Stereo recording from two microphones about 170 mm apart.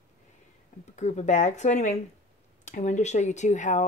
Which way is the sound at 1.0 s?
45° left (ahead or behind).